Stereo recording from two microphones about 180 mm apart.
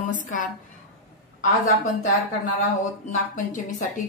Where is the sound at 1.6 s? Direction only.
45° left (ahead or behind).